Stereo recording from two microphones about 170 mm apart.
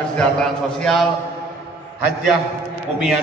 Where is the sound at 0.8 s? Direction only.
Centre (ahead or behind).